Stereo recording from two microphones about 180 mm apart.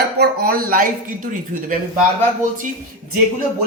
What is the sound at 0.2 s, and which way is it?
Speech, 55° right (ahead or behind).